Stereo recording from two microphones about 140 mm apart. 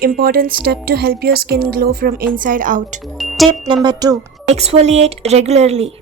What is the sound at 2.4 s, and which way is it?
Speech, 75° right (ahead or behind).